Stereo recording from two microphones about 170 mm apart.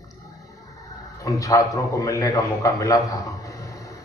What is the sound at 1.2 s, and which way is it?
A man's voice, 20° left (ahead or behind).